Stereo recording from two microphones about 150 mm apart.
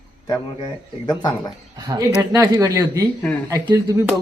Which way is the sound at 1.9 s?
25° right (ahead or behind).